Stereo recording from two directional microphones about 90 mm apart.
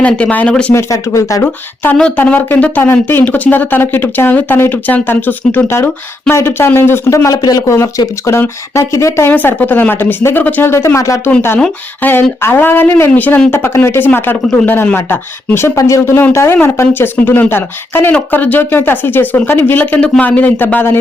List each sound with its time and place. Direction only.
0.0 s speech: 15° left (ahead or behind)
0.7 s speech: 35° left (ahead or behind)
2.0 s speech: 10° left (ahead or behind); by 7.3 s 30° left (ahead or behind)
7.4 s speech: 45° left (ahead or behind)
7.8 s speech: 30° left (ahead or behind)
9.3 s speech: 20° left (ahead or behind); by 11.2 s 35° left (ahead or behind)
12.0 s speech: 25° left (ahead or behind)